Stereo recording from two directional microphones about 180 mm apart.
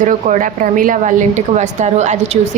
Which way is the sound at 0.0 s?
45° right (ahead or behind).